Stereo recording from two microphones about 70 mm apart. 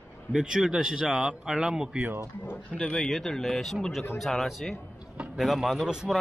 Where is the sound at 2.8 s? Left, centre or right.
Centre.